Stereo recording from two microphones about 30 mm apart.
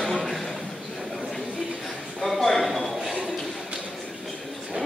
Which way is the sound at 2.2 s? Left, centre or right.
Centre.